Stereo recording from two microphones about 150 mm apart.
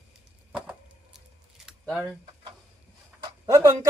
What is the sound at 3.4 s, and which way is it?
Speech, 20° right (ahead or behind).